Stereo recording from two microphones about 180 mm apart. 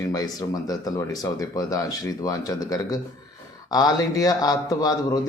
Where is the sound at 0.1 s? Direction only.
20° left (ahead or behind).